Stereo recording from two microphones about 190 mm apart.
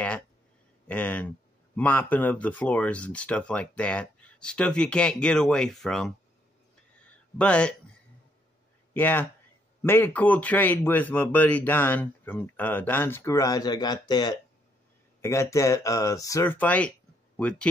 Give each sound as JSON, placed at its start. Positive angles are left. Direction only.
{"t": 0.8, "sound": "speech", "side_deg": 10}
{"t": 7.1, "sound": "a sound", "side_deg": 5}
{"t": 8.9, "sound": "speech", "side_deg": 10}